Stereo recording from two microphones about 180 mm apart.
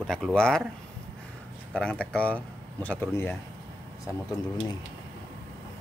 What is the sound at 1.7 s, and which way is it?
Speech, 5° left (ahead or behind).